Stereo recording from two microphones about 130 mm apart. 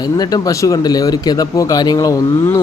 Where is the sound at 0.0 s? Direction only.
30° left (ahead or behind).